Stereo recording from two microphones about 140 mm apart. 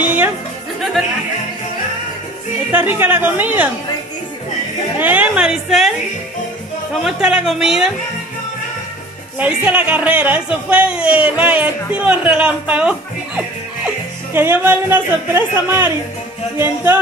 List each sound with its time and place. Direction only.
0.0 s music: 15° right (ahead or behind)
2.7 s a woman's voice: 15° right (ahead or behind)
4.9 s a woman's voice: 10° right (ahead or behind)
9.4 s a woman's voice: 10° right (ahead or behind)